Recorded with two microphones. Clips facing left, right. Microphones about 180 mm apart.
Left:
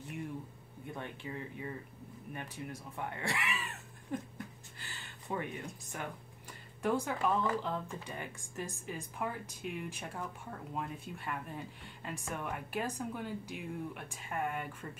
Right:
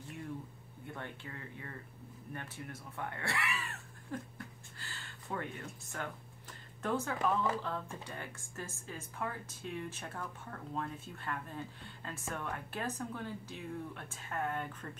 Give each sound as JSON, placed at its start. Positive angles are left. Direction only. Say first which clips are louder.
{"t": 0.8, "sound": "speech", "louder": "left 3 dB", "side_deg": 15}
{"t": 4.7, "sound": "a sound", "louder": "right 1 dB", "side_deg": 15}
{"t": 6.8, "sound": "speech", "louder": "left 2 dB", "side_deg": 10}